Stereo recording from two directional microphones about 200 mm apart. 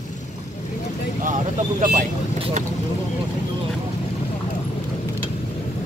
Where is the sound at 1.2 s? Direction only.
40° right (ahead or behind).